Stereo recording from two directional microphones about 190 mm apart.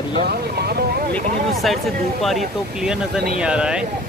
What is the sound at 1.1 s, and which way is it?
Speech, centre (ahead or behind).